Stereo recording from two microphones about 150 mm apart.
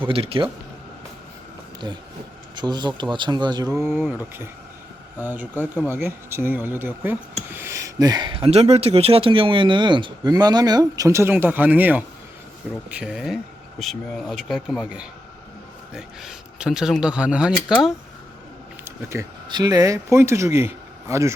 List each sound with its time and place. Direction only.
0.1 s speech: 40° right (ahead or behind)
2.6 s speech: 30° right (ahead or behind)
3.8 s speech: centre (ahead or behind)
5.2 s speech: 10° right (ahead or behind)
18.9 s a sound: 20° right (ahead or behind)
19.5 s speech: 25° right (ahead or behind)